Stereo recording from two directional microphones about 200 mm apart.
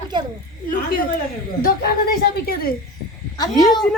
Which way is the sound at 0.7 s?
45° left (ahead or behind).